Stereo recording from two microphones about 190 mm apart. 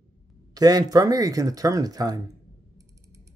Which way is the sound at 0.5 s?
20° right (ahead or behind).